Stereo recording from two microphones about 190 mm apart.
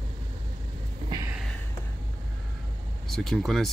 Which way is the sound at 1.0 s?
20° right (ahead or behind).